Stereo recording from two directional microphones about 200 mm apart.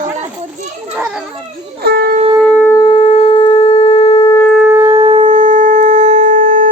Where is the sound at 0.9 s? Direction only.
5° right (ahead or behind).